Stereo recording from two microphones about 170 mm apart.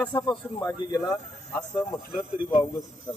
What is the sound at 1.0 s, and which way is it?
Speech, 5° left (ahead or behind).